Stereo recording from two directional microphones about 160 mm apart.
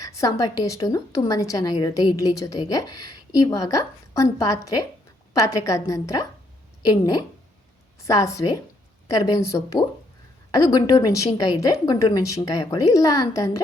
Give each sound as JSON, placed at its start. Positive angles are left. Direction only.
{"t": 0.0, "sound": "a woman's voice", "side_deg": 20}